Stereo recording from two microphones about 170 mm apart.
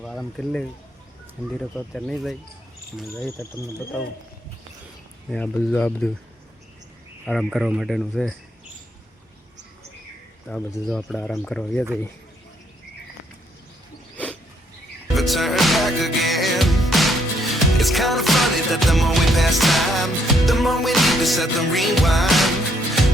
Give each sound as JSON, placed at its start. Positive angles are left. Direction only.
{"t": 0.0, "sound": "speech", "side_deg": 5}
{"t": 1.9, "sound": "speech", "side_deg": 0}
{"t": 5.3, "sound": "speech", "side_deg": 10}
{"t": 7.3, "sound": "speech", "side_deg": 0}
{"t": 10.4, "sound": "speech", "side_deg": 5}
{"t": 15.1, "sound": "music", "side_deg": 0}